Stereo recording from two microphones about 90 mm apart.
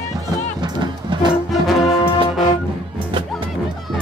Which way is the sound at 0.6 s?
55° right (ahead or behind).